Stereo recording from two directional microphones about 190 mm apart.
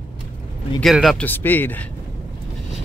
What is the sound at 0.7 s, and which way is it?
A man's voice, centre (ahead or behind).